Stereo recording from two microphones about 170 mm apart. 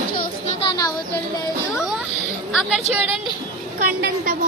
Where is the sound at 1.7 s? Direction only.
5° right (ahead or behind).